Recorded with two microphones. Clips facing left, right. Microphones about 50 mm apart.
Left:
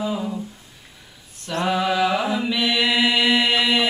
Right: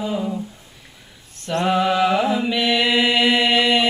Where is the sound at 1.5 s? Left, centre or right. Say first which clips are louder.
Right 3 dB; centre.